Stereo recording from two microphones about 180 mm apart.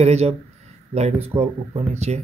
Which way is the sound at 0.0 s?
35° right (ahead or behind).